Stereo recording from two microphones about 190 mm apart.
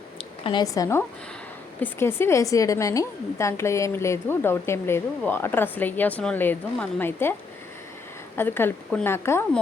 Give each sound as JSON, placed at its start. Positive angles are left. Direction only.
{"t": 0.4, "sound": "a woman's voice", "side_deg": 20}
{"t": 8.4, "sound": "a woman's voice", "side_deg": 10}